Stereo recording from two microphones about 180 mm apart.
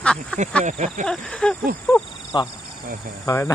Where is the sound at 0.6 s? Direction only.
45° right (ahead or behind).